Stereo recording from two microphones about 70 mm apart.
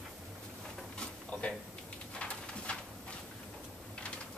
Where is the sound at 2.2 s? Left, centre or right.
Centre.